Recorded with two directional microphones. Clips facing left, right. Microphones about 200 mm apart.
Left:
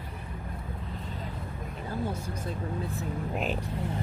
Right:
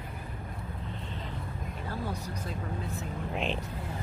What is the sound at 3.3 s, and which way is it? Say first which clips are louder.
Speech: even; 5° left (ahead or behind).